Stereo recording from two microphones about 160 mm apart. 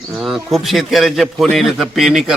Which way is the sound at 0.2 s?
Centre (ahead or behind).